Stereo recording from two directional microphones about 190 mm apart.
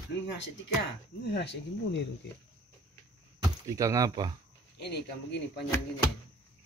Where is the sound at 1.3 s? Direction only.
65° left (ahead or behind).